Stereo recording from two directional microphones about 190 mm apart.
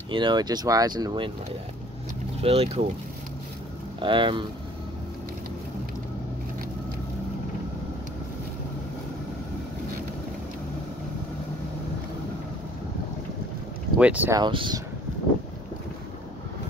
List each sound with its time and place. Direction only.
0.1 s speech: 25° right (ahead or behind)
2.4 s speech: 30° right (ahead or behind)
4.0 s speech: 25° right (ahead or behind)
13.9 s speech: 5° right (ahead or behind)
14.4 s speech: 25° right (ahead or behind)